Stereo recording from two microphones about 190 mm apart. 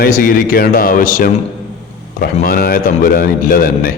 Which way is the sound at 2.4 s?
50° left (ahead or behind).